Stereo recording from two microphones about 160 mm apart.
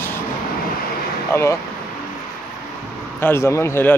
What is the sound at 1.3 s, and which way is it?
Speech, 15° left (ahead or behind).